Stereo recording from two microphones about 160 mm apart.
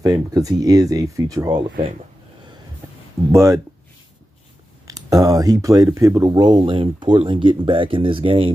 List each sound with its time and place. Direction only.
0.0 s speech: 25° right (ahead or behind)
3.3 s speech: 20° right (ahead or behind)
4.8 s speech: 20° right (ahead or behind)